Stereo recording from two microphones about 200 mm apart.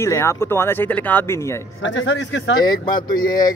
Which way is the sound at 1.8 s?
65° left (ahead or behind).